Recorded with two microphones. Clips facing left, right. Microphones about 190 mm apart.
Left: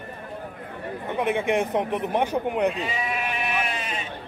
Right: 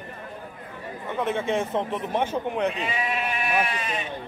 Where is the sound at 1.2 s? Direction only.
15° left (ahead or behind).